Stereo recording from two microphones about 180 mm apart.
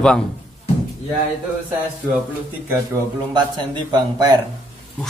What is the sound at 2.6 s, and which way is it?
A man's voice, 20° right (ahead or behind).